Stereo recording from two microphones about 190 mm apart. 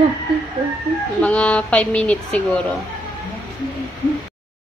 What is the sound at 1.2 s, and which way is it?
A woman's voice, 5° left (ahead or behind).